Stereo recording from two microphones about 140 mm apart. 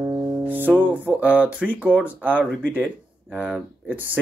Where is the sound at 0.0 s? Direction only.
25° right (ahead or behind).